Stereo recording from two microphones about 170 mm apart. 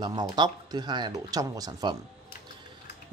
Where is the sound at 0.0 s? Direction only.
25° right (ahead or behind).